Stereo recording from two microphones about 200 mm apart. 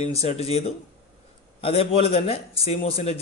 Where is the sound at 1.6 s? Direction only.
30° left (ahead or behind).